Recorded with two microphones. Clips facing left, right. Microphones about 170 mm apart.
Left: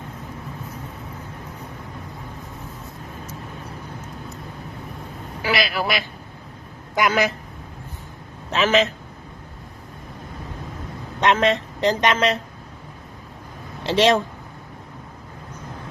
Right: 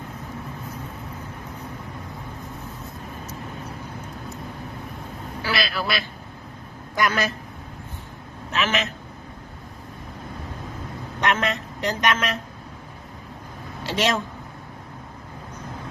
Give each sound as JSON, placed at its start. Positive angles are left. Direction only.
{"t": 5.4, "sound": "vehicle", "side_deg": 15}
{"t": 7.0, "sound": "speech", "side_deg": 15}
{"t": 8.4, "sound": "a man's voice", "side_deg": 30}
{"t": 11.2, "sound": "speech", "side_deg": 25}
{"t": 13.8, "sound": "speech", "side_deg": 30}